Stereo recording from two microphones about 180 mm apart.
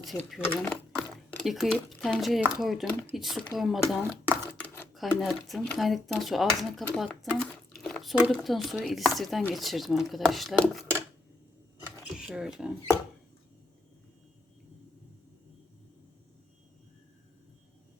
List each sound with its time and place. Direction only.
0.0 s speech: centre (ahead or behind)
0.4 s speech: 10° left (ahead or behind)
1.5 s speech: centre (ahead or behind)
12.1 s speech: 5° right (ahead or behind)